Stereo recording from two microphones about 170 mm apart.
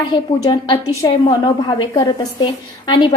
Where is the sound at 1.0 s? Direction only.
25° left (ahead or behind).